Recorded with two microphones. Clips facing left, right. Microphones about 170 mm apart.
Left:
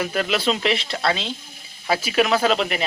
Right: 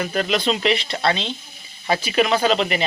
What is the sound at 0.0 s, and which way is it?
Speech, 5° left (ahead or behind).